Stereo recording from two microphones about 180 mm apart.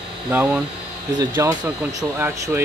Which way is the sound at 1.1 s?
25° right (ahead or behind).